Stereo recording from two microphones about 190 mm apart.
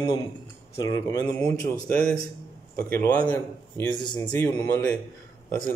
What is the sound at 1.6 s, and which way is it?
A man's voice, 5° left (ahead or behind).